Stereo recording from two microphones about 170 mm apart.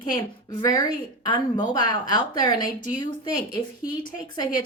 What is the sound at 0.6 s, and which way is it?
A woman's voice, 20° left (ahead or behind).